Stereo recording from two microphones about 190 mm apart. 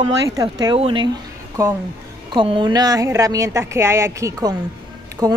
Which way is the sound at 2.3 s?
25° right (ahead or behind).